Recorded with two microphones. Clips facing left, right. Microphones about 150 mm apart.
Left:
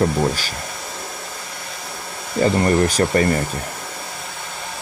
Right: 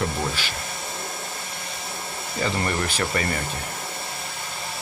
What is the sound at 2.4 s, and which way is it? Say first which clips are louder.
Speech: left 9 dB; 40° left (ahead or behind).